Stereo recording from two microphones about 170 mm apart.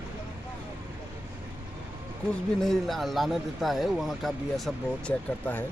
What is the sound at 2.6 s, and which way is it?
Speech, centre (ahead or behind).